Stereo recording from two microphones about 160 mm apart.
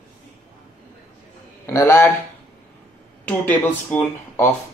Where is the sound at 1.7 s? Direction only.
15° left (ahead or behind).